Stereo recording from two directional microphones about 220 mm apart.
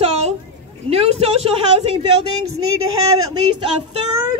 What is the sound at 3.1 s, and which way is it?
Speech, 80° right.